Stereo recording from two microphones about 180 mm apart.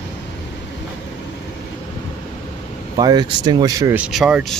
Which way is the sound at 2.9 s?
25° right (ahead or behind).